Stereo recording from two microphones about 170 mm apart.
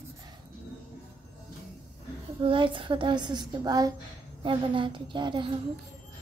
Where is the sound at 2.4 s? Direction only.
30° right (ahead or behind).